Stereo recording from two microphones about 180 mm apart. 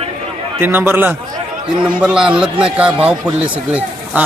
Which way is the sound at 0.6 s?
10° right (ahead or behind).